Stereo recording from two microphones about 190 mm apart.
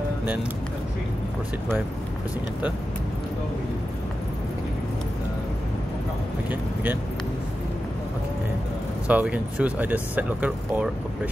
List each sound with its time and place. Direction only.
6.5 s speech: 10° right (ahead or behind)
9.0 s speech: 5° right (ahead or behind)